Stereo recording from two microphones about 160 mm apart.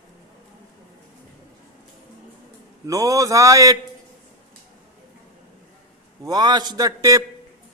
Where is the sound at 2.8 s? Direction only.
20° right (ahead or behind).